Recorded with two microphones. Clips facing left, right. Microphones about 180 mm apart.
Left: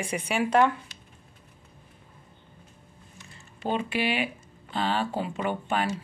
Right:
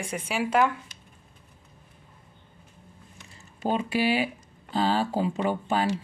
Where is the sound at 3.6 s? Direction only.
40° right (ahead or behind).